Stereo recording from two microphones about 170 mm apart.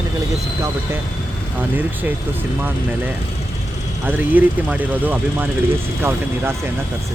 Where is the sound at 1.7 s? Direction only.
10° right (ahead or behind).